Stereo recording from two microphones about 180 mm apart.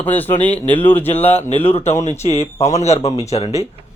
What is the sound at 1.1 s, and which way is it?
Speech, 35° left (ahead or behind).